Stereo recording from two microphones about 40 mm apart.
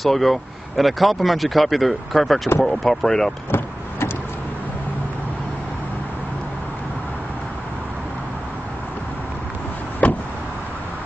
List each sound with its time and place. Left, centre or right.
0.0 s speech: centre
10.0 s vehicle: left